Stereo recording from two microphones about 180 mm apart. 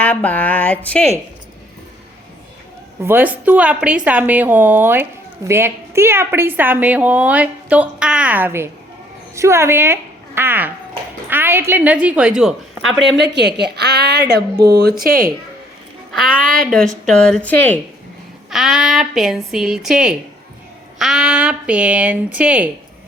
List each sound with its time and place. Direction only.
0.0 s speech: 10° left (ahead or behind)
3.0 s a woman's voice: 10° right (ahead or behind)
13.0 s a woman's voice: 70° right (ahead or behind)
14.5 s speech: 20° right (ahead or behind)
14.8 s speech: 60° right (ahead or behind)
16.6 s speech: 5° left (ahead or behind)
18.5 s a woman's voice: centre (ahead or behind)